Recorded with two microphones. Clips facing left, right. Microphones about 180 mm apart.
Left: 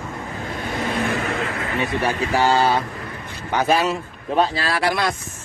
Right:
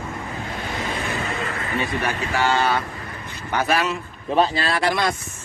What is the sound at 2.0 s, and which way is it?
Speech, 35° left (ahead or behind).